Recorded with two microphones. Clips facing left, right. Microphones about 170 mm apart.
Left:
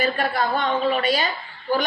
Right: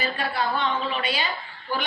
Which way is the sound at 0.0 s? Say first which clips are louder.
Left 4 dB; 45° left (ahead or behind).